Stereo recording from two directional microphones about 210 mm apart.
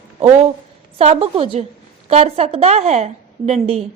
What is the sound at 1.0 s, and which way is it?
A woman's voice, 25° right (ahead or behind).